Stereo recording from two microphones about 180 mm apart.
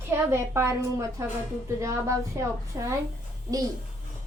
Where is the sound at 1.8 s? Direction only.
15° right (ahead or behind).